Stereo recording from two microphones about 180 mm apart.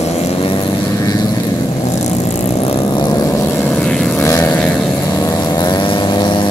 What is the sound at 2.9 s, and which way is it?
Vehicle, 20° left (ahead or behind).